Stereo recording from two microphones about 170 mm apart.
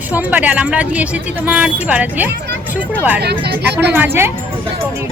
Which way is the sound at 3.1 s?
75° right (ahead or behind).